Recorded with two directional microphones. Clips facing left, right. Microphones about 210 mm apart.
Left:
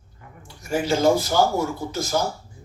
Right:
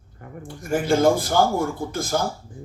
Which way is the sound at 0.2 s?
50° right (ahead or behind).